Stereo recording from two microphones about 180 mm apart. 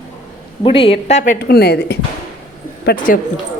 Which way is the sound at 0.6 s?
30° left (ahead or behind).